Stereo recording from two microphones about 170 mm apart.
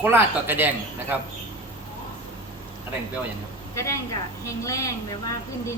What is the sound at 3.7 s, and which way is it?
A woman's voice, 15° left (ahead or behind).